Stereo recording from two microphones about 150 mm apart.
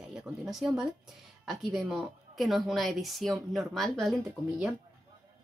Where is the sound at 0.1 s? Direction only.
5° right (ahead or behind).